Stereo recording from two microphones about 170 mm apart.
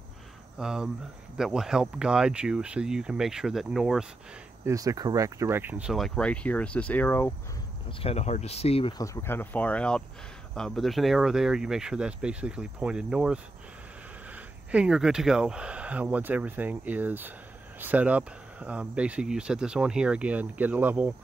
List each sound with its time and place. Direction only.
0.6 s speech: 5° right (ahead or behind)
4.6 s speech: 20° right (ahead or behind); by 7.3 s 10° left (ahead or behind)
8.0 s speech: 35° left (ahead or behind)
8.9 s speech: 20° left (ahead or behind); by 21.1 s 10° right (ahead or behind)